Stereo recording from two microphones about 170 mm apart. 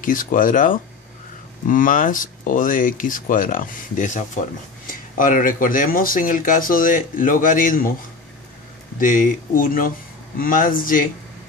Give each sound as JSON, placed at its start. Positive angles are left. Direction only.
{"t": 0.0, "sound": "speech", "side_deg": 55}
{"t": 9.0, "sound": "speech", "side_deg": 50}